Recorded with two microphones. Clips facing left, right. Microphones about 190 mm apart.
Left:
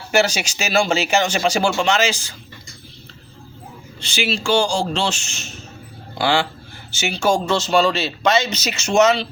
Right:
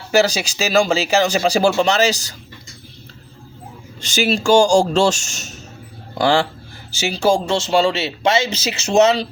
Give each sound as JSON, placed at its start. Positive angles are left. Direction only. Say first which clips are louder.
{"t": 0.1, "sound": "speech", "louder": "right 2 dB", "side_deg": -35}
{"t": 4.0, "sound": "speech", "louder": "right 5 dB", "side_deg": -45}